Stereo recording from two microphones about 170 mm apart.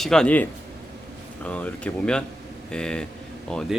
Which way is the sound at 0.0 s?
5° left (ahead or behind).